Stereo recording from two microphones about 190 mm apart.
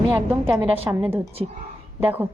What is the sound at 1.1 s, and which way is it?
Speech, 30° right (ahead or behind).